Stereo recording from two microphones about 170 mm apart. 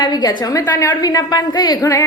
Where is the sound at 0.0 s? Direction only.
25° left (ahead or behind).